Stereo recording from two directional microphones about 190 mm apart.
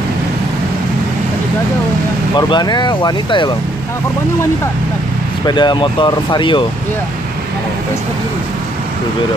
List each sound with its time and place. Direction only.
2.3 s speech: 25° left (ahead or behind)
5.5 s speech: 25° left (ahead or behind)